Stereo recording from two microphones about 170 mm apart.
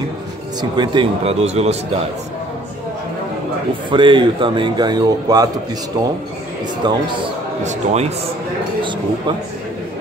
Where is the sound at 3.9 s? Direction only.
30° right (ahead or behind).